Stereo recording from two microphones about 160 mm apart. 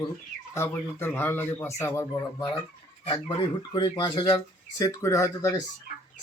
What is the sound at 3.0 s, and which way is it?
Speech, 30° left (ahead or behind).